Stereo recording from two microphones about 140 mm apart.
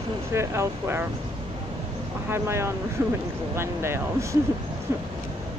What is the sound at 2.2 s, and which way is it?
Speech, 15° right (ahead or behind).